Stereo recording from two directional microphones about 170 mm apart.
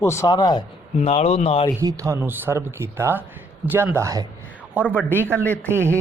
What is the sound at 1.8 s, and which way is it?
Speech, 20° right (ahead or behind).